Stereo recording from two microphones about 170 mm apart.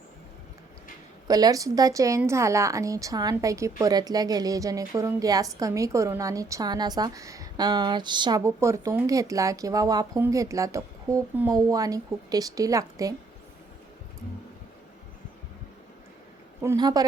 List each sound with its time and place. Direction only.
1.3 s a woman's voice: 20° right (ahead or behind)
16.6 s a woman's voice: 25° right (ahead or behind)